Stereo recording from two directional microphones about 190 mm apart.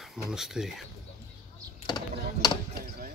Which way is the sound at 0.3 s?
5° right (ahead or behind).